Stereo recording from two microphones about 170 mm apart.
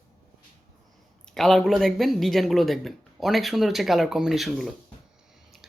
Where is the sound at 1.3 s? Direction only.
Centre (ahead or behind).